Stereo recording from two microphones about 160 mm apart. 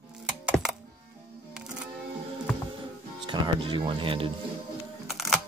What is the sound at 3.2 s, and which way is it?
Music, 30° right (ahead or behind).